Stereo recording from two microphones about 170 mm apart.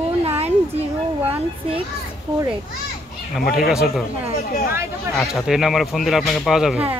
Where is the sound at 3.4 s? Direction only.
65° left (ahead or behind).